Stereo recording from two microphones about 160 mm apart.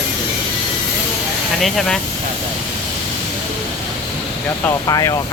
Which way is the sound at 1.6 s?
Centre (ahead or behind).